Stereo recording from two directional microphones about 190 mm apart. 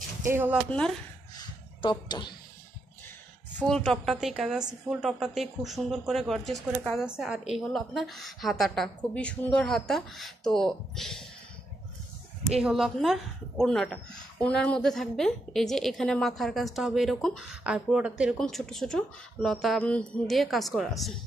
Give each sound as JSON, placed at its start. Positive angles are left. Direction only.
{"t": 0.2, "sound": "speech", "side_deg": -10}
{"t": 0.7, "sound": "a woman's voice", "side_deg": 5}
{"t": 1.8, "sound": "speech", "side_deg": 25}
{"t": 3.5, "sound": "a woman's voice", "side_deg": 5}
{"t": 12.4, "sound": "a woman's voice", "side_deg": 0}